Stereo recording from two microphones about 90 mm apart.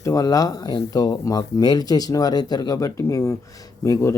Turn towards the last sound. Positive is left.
turn(degrees=35)  # may be behind; listen again after turning